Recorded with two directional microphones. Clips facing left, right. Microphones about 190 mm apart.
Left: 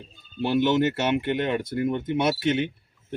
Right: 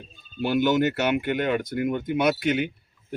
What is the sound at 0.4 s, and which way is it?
Speech, 25° left (ahead or behind).